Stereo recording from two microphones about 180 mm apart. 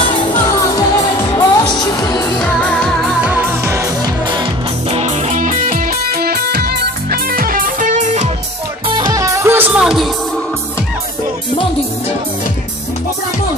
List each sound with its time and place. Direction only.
0.3 s music: 20° left (ahead or behind)
2.3 s music: 5° left (ahead or behind); by 4.5 s 25° right (ahead or behind)
4.9 s music: 40° right (ahead or behind)
8.8 s music: 25° right (ahead or behind); by 10.0 s 5° right (ahead or behind)